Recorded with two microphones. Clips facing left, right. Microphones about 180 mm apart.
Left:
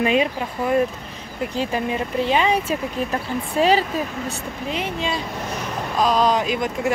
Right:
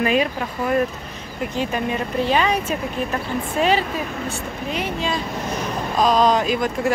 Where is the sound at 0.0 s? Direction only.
25° left (ahead or behind).